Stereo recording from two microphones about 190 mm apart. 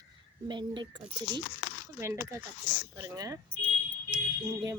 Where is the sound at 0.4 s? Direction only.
25° right (ahead or behind).